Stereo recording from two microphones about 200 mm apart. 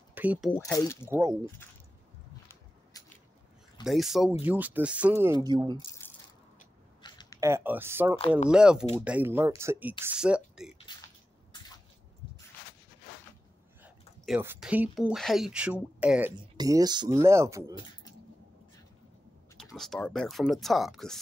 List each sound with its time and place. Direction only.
0.1 s speech: 10° right (ahead or behind)
0.5 s speech: 10° left (ahead or behind)
2.9 s a sound: 20° left (ahead or behind)
3.8 s speech: centre (ahead or behind); by 5.8 s 20° right (ahead or behind)
7.0 s a sound: 20° left (ahead or behind)
7.3 s speech: 15° right (ahead or behind)
13.8 s speech: 5° right (ahead or behind)
16.5 s speech: 20° right (ahead or behind)
19.5 s speech: centre (ahead or behind)